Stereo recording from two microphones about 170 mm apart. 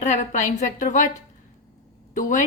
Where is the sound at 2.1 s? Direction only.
45° left (ahead or behind).